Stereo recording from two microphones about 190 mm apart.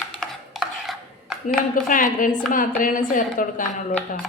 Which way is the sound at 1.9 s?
45° left (ahead or behind).